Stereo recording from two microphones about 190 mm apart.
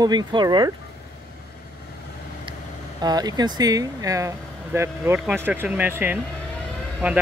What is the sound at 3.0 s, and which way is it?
Speech, 20° right (ahead or behind).